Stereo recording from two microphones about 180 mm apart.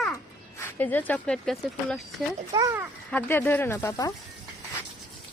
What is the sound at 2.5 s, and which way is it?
Speech, 20° right (ahead or behind).